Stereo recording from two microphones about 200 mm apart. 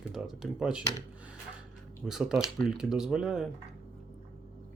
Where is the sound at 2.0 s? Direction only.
Centre (ahead or behind).